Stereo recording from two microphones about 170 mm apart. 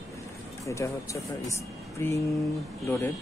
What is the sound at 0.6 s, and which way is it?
Speech, 15° left (ahead or behind).